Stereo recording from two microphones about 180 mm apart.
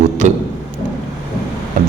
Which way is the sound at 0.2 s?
40° right (ahead or behind).